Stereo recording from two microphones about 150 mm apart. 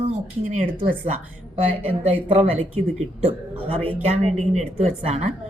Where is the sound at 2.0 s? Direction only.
45° right (ahead or behind).